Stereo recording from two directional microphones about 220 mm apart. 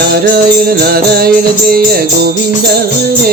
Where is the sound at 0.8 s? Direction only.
45° right (ahead or behind).